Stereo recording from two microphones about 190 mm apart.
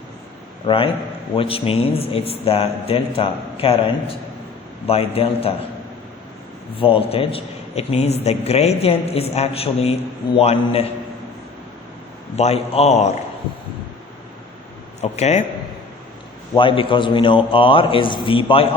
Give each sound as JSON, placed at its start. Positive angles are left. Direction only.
{"t": 0.7, "sound": "a man's voice", "side_deg": 30}
{"t": 6.7, "sound": "a man's voice", "side_deg": 30}
{"t": 12.4, "sound": "a man's voice", "side_deg": 35}
{"t": 15.0, "sound": "a man's voice", "side_deg": 35}
{"t": 16.6, "sound": "a man's voice", "side_deg": 25}